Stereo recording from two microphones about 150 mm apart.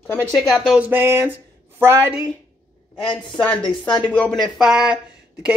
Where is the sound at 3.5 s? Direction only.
5° left (ahead or behind).